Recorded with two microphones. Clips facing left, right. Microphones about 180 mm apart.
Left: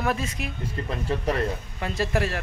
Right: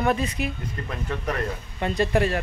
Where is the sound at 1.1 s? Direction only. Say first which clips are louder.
Left 3 dB; 30° left (ahead or behind).